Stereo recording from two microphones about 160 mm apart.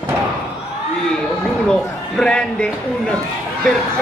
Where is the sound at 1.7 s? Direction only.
5° left (ahead or behind).